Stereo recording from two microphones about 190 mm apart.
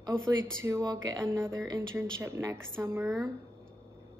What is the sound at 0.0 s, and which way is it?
Speech, 15° right (ahead or behind).